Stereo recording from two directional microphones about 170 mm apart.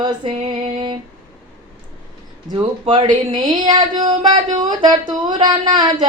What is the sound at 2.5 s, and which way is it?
Speech, 25° right (ahead or behind).